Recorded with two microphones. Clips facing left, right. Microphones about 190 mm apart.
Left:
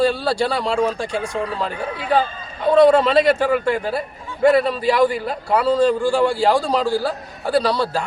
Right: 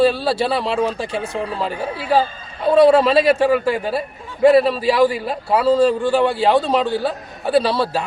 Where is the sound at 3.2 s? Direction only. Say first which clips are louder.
Right 2 dB; 25° right (ahead or behind).